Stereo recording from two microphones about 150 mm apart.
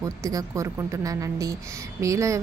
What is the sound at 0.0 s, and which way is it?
A woman's voice, 20° right (ahead or behind).